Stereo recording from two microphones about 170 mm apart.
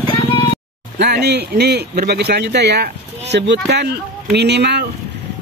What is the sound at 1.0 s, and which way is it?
A man's voice, 75° right (ahead or behind).